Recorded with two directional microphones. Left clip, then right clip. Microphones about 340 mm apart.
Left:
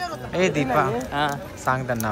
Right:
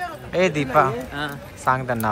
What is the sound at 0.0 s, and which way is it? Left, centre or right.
Speech, centre.